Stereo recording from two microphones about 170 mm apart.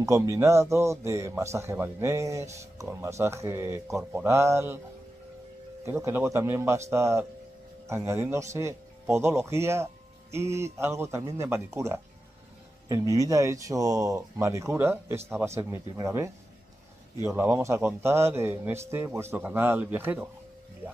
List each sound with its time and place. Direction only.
0.0 s a man's voice: 20° right (ahead or behind)
5.9 s a man's voice: 15° right (ahead or behind)